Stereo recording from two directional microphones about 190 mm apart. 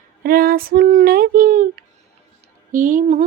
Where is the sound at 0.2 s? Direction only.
50° right (ahead or behind).